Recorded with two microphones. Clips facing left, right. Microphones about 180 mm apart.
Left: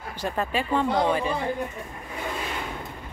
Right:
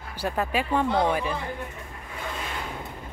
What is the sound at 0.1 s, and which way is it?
Speech, 10° right (ahead or behind).